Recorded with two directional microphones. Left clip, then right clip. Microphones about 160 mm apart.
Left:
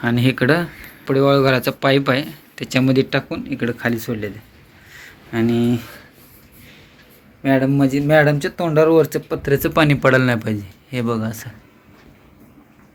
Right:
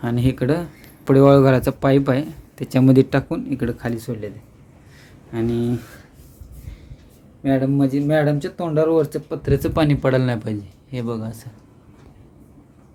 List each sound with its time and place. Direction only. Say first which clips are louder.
0.0 s speech: left 5 dB; 15° right (ahead or behind)
1.0 s speech: right 2 dB; 75° right (ahead or behind)
3.9 s speech: left 4 dB; 5° right (ahead or behind)
7.4 s speech: left 3 dB; 5° right (ahead or behind)